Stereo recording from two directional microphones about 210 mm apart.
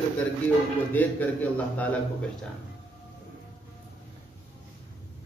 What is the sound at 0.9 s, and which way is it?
A man's voice, 10° left (ahead or behind).